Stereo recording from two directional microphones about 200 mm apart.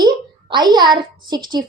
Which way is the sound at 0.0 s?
20° right (ahead or behind).